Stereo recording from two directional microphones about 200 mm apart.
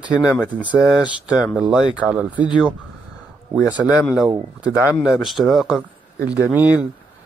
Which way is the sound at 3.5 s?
5° right (ahead or behind).